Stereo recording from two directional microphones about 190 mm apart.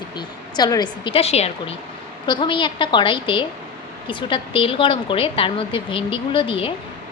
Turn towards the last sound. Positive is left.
turn(degrees=25)  # may be behind; listen again after turning